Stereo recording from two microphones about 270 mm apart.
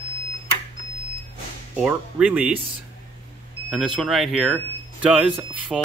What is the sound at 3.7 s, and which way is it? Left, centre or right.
Speech, centre.